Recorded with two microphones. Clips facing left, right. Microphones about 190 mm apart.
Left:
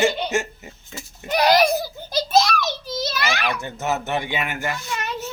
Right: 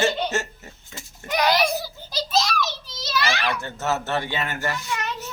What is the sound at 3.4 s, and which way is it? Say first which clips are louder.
Speech: left 1 dB; 15° left (ahead or behind).